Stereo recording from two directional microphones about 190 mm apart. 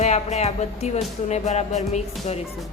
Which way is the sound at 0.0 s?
35° left (ahead or behind).